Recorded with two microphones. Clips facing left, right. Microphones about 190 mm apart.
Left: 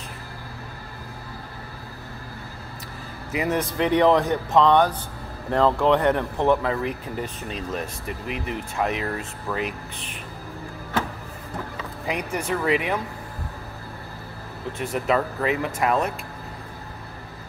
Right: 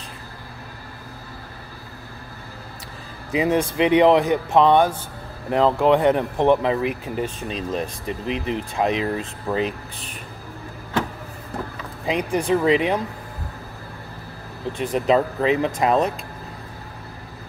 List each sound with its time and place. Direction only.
3.3 s speech: 25° right (ahead or behind)
12.1 s speech: 30° right (ahead or behind)
14.7 s speech: 15° right (ahead or behind)